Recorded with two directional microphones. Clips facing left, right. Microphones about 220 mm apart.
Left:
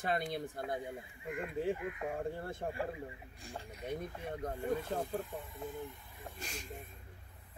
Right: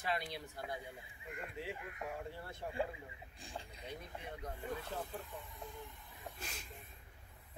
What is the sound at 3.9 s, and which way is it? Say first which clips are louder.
Speech: left 8 dB; 50° left (ahead or behind).